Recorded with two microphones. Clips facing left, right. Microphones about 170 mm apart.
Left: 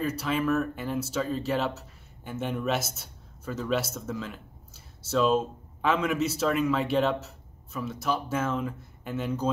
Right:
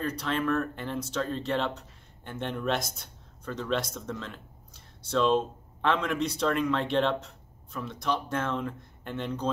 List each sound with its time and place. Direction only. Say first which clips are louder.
0.0 s speech: left 2 dB; 5° left (ahead or behind)